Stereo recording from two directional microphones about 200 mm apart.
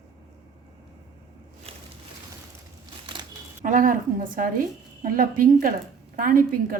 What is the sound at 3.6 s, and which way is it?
Speech, 40° right (ahead or behind).